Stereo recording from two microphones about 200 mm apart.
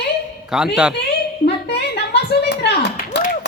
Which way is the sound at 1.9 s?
55° left (ahead or behind).